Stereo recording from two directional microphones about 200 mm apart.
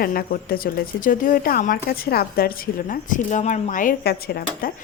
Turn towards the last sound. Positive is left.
turn(degrees=50)  # may be behind; listen again after turning